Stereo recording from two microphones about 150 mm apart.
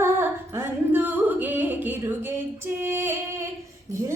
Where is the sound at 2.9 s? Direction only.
15° right (ahead or behind).